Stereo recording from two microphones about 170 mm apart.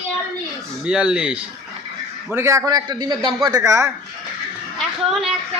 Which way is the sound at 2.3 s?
15° right (ahead or behind).